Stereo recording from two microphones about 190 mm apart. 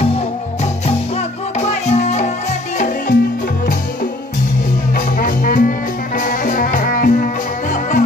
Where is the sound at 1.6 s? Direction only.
35° left (ahead or behind).